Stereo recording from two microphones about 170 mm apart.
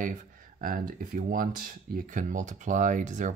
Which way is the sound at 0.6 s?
55° right (ahead or behind).